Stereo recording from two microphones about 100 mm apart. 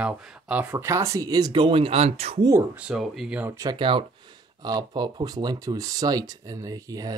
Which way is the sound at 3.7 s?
60° right (ahead or behind).